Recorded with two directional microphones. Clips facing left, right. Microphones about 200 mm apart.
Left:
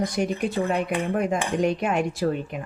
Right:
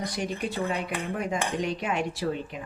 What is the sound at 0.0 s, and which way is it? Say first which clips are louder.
A woman's voice: left 6 dB; 50° left (ahead or behind).